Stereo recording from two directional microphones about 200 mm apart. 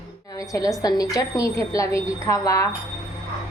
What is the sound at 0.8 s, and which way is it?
A woman's voice, 20° left (ahead or behind).